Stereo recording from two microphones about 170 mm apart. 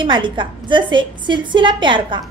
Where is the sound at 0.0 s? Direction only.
30° right (ahead or behind).